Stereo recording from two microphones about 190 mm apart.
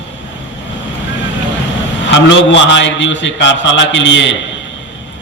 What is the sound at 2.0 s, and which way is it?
A man's voice, 75° left (ahead or behind).